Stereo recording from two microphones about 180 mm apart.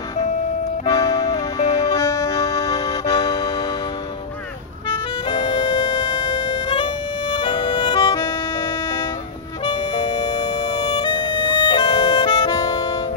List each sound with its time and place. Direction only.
0.8 s music: 20° left (ahead or behind)
5.3 s music: 35° left (ahead or behind)
9.7 s music: 25° left (ahead or behind)